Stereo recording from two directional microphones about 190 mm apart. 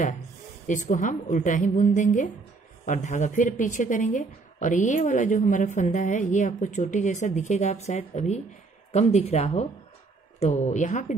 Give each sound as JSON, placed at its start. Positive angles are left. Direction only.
{"t": 0.7, "sound": "a woman's voice", "side_deg": 40}